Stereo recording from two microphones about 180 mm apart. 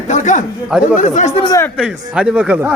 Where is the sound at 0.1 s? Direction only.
45° left (ahead or behind).